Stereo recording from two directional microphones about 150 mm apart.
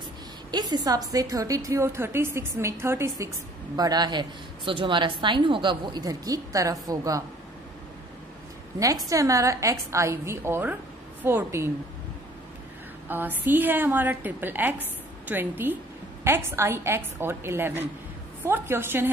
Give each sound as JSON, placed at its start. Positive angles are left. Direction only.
{"t": 0.5, "sound": "a woman's voice", "side_deg": -30}
{"t": 9.1, "sound": "a woman's voice", "side_deg": -20}
{"t": 13.1, "sound": "a woman's voice", "side_deg": -10}